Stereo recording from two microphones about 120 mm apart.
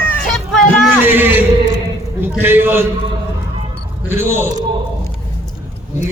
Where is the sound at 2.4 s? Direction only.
15° right (ahead or behind).